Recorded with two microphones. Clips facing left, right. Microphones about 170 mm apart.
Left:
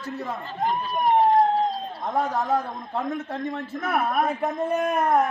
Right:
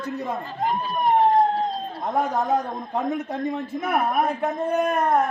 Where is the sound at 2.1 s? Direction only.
15° right (ahead or behind).